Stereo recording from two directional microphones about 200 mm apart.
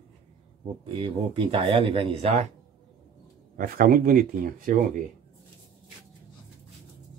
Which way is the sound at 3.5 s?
45° right (ahead or behind).